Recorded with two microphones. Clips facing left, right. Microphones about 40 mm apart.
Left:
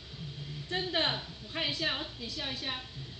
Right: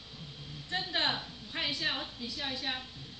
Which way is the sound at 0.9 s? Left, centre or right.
Centre.